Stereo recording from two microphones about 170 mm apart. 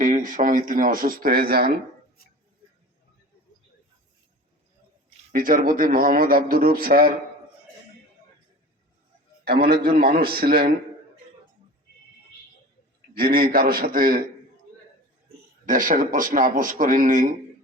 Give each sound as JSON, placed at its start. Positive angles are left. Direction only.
{"t": 0.0, "sound": "a man's voice", "side_deg": -50}
{"t": 5.0, "sound": "a man's voice", "side_deg": -55}
{"t": 9.4, "sound": "a man's voice", "side_deg": -70}
{"t": 13.1, "sound": "a man's voice", "side_deg": -60}
{"t": 15.6, "sound": "a man's voice", "side_deg": -50}